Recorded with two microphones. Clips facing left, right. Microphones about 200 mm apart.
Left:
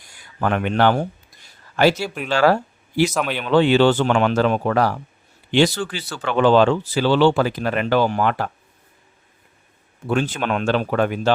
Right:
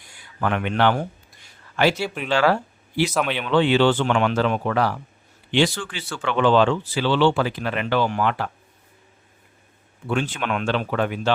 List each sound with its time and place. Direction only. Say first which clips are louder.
0.4 s speech: left 3 dB; 40° left (ahead or behind)
2.0 s speech: left 1 dB; 5° left (ahead or behind)
2.3 s speech: left 3 dB; 40° left (ahead or behind)
3.1 s speech: even; 5° left (ahead or behind)
3.4 s speech: left 3 dB; 40° left (ahead or behind)
10.1 s speech: left 3 dB; 40° left (ahead or behind)